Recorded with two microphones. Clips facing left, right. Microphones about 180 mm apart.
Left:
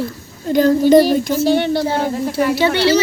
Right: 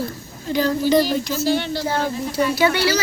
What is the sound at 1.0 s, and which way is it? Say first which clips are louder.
Speech: left 6 dB; 60° left (ahead or behind).